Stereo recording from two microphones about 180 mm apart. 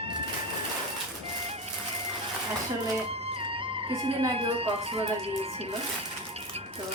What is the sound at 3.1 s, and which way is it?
Music, 30° right (ahead or behind).